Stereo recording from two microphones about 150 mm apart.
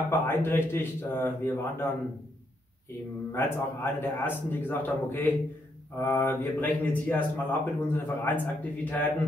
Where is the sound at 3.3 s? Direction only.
15° left (ahead or behind).